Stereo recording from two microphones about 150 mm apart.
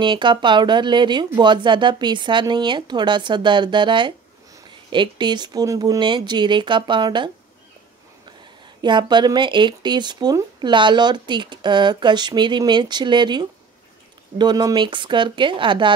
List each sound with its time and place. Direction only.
0.0 s speech: 30° right (ahead or behind)
8.8 s speech: 30° right (ahead or behind)